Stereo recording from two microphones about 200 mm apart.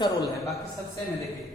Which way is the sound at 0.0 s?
15° left (ahead or behind).